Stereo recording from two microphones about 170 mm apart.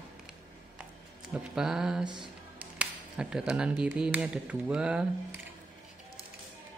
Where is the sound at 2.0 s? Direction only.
25° right (ahead or behind).